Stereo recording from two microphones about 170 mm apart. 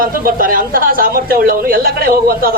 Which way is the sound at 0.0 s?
55° right (ahead or behind).